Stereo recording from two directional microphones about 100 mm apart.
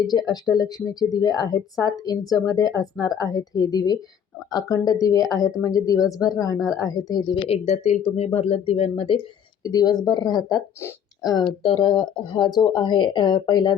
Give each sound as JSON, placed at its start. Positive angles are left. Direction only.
{"t": 0.1, "sound": "speech", "side_deg": 45}
{"t": 7.4, "sound": "speech", "side_deg": 85}
{"t": 9.6, "sound": "speech", "side_deg": 40}
{"t": 11.6, "sound": "speech", "side_deg": 55}